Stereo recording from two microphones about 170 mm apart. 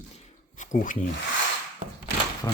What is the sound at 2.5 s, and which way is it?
Speech, 25° left (ahead or behind).